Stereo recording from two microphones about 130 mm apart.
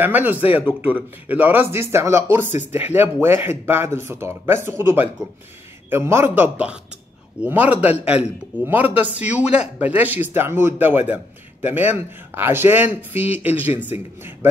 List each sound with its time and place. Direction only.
0.0 s a man's voice: 15° right (ahead or behind)